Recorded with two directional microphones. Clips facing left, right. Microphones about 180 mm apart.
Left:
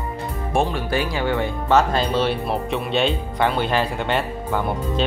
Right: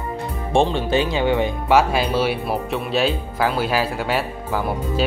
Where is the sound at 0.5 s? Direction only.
25° right (ahead or behind).